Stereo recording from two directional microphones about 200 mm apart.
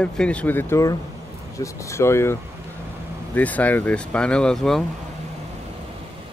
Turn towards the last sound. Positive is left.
turn(degrees=5)  # may be behind; listen again after turning